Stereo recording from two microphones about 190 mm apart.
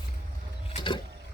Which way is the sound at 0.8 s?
25° left (ahead or behind).